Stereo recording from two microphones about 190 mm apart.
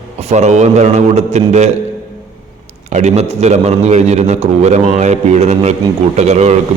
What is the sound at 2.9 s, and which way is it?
A man's voice, 35° right (ahead or behind).